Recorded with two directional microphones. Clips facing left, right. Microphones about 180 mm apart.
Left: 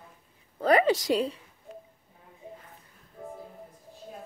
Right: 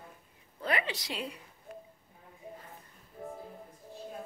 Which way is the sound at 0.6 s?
40° left (ahead or behind).